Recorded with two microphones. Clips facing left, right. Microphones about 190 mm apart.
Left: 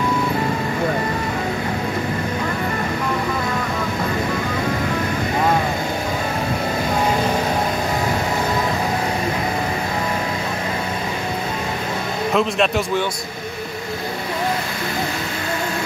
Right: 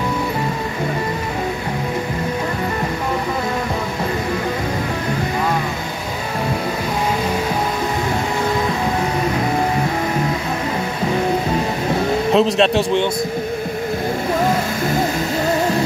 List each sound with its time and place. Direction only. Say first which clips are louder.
12.4 s a man's voice: right 3 dB; 30° right (ahead or behind)